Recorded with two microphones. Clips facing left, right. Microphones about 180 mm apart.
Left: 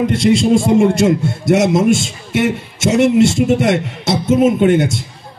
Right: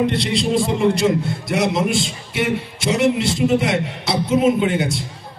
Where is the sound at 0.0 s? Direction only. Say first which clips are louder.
Left 6 dB; 45° left (ahead or behind).